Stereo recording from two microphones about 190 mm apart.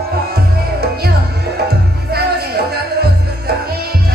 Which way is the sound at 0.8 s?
55° right (ahead or behind).